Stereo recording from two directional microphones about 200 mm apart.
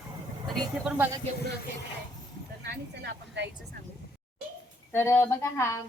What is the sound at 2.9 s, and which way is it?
Speech, 60° right (ahead or behind).